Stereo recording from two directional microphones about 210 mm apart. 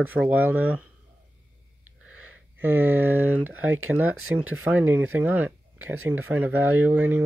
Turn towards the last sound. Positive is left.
turn(degrees=-10)  # may be behind; listen again after turning